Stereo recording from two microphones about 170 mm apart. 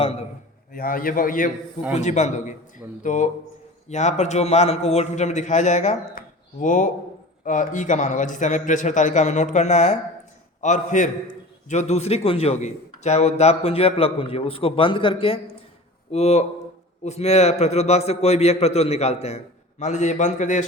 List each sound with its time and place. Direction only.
0.0 s a man's voice: 35° left (ahead or behind)
0.7 s a man's voice: 55° left (ahead or behind)
2.0 s a man's voice: 45° left (ahead or behind)